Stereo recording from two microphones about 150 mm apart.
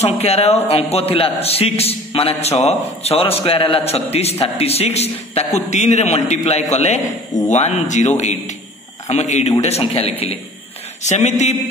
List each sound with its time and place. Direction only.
0.0 s a man's voice: 45° left (ahead or behind)